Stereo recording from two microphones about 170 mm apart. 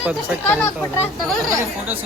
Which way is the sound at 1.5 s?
15° right (ahead or behind).